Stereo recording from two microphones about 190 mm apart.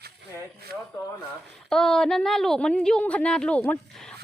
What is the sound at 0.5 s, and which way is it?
Speech, 55° right (ahead or behind).